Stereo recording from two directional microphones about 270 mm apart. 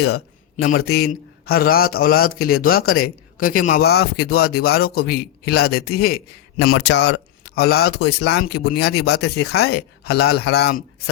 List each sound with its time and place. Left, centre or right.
0.0 s a man's voice: left